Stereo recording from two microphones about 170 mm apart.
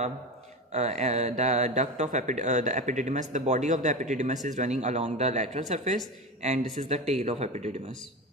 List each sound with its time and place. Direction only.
0.7 s speech: 40° right (ahead or behind)